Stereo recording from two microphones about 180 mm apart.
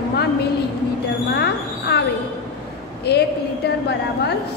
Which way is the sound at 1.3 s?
65° left (ahead or behind).